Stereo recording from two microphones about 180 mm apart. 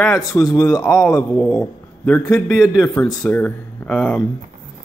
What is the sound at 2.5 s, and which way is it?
Speech, 5° right (ahead or behind).